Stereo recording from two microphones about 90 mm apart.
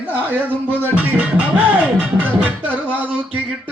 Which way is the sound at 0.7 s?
15° right (ahead or behind).